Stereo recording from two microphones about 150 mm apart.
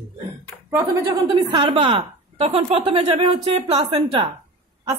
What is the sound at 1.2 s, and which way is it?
A woman's voice, 25° right (ahead or behind).